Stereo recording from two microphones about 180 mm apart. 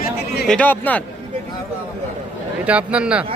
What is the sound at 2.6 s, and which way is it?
Speech, 5° right (ahead or behind).